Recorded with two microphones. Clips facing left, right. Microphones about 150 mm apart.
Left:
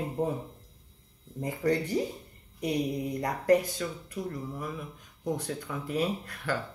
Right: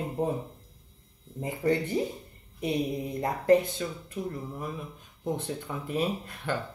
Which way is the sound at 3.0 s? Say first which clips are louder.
Right 2 dB; 25° right (ahead or behind).